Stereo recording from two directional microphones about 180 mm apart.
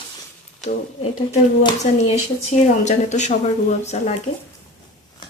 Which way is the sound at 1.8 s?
35° left (ahead or behind).